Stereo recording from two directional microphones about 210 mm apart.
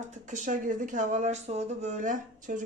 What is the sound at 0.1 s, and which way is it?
Speech, 35° right (ahead or behind).